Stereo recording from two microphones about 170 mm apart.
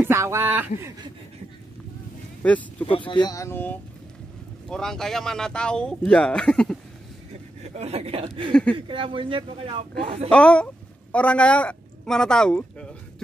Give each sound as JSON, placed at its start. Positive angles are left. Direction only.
{"t": 0.0, "sound": "speech", "side_deg": -15}
{"t": 2.9, "sound": "speech", "side_deg": 30}
{"t": 7.6, "sound": "speech", "side_deg": -35}
{"t": 8.5, "sound": "speech", "side_deg": 5}
{"t": 8.7, "sound": "speech", "side_deg": -30}
{"t": 10.3, "sound": "a woman's voice", "side_deg": 5}